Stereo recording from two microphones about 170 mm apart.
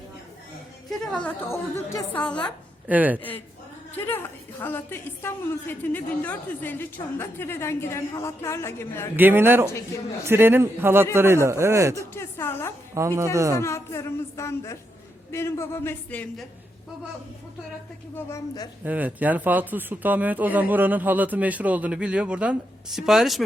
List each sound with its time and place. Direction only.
0.9 s a woman's voice: 5° left (ahead or behind)
2.8 s speech: 10° right (ahead or behind)
3.2 s a woman's voice: 10° left (ahead or behind)
9.1 s speech: 10° right (ahead or behind)
11.9 s a woman's voice: 15° left (ahead or behind)
12.9 s a woman's voice: 15° right (ahead or behind)
13.6 s a woman's voice: 15° left (ahead or behind)
18.3 s a woman's voice: 20° left (ahead or behind)
18.9 s speech: 10° right (ahead or behind)